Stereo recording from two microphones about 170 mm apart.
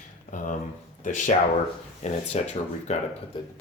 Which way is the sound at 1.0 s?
50° left (ahead or behind).